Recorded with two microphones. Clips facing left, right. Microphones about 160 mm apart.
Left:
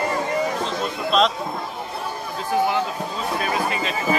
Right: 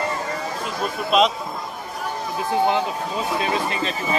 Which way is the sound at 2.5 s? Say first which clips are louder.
Right 1 dB; 20° right (ahead or behind).